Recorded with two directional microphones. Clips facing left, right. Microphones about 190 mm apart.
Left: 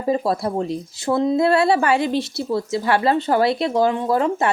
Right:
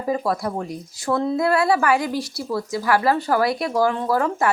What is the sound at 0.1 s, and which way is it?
Speech, 25° left (ahead or behind).